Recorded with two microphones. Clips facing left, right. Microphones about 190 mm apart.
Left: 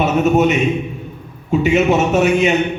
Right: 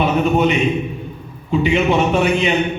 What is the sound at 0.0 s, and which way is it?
A man's voice, 45° left (ahead or behind).